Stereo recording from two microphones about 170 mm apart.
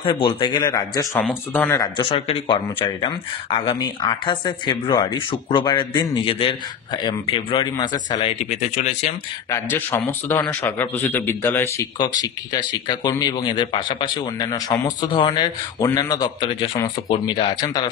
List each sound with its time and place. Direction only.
0.0 s a man's voice: 30° left (ahead or behind); by 1.8 s 10° left (ahead or behind)
1.8 s speech: 30° left (ahead or behind)
9.5 s a man's voice: 15° left (ahead or behind)
12.0 s speech: 25° left (ahead or behind)